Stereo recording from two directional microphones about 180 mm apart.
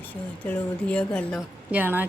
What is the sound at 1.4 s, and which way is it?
Speech, 10° right (ahead or behind).